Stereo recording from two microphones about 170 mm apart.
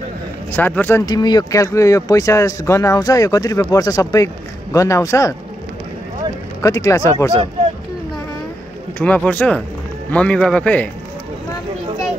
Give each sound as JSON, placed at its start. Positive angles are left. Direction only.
{"t": 0.5, "sound": "a man's voice", "side_deg": 10}
{"t": 1.0, "sound": "a man's voice", "side_deg": 25}
{"t": 6.6, "sound": "a man's voice", "side_deg": 20}
{"t": 8.9, "sound": "a man's voice", "side_deg": 10}